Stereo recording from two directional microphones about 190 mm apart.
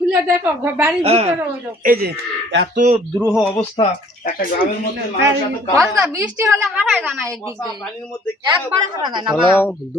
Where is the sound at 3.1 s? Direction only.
15° right (ahead or behind).